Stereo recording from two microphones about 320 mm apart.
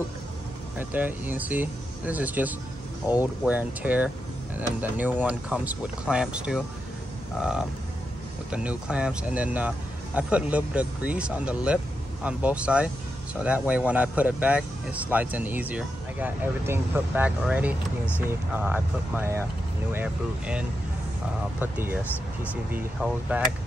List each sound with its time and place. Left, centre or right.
0.7 s speech: centre